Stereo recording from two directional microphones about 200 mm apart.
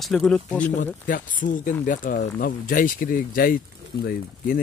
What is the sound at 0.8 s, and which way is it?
Speech, 40° left (ahead or behind).